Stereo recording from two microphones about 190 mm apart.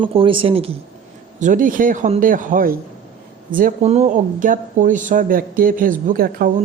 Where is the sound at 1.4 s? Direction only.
45° right (ahead or behind).